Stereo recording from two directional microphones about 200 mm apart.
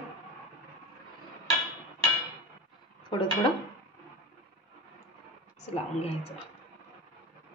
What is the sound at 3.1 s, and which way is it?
Speech, 25° left (ahead or behind).